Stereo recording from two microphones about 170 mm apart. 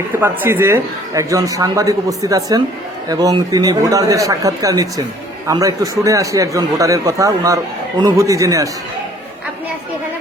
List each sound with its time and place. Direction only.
0.2 s a man's voice: 15° right (ahead or behind)